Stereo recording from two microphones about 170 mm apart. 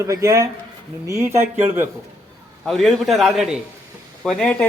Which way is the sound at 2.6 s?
Centre (ahead or behind).